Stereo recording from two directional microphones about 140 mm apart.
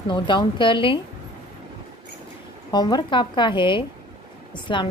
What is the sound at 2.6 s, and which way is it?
A woman's voice, 30° left (ahead or behind).